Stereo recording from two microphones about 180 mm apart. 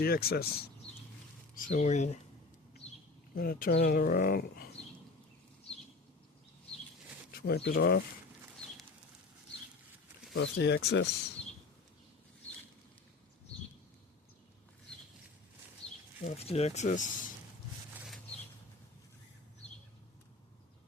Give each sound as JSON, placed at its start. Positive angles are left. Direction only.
{"t": 0.0, "sound": "speech", "side_deg": 60}
{"t": 1.5, "sound": "speech", "side_deg": 45}
{"t": 2.8, "sound": "bird", "side_deg": 35}
{"t": 3.3, "sound": "speech", "side_deg": 55}
{"t": 7.3, "sound": "speech", "side_deg": 65}
{"t": 10.3, "sound": "speech", "side_deg": 75}
{"t": 15.8, "sound": "a sound", "side_deg": -20}
{"t": 16.2, "sound": "speech", "side_deg": 35}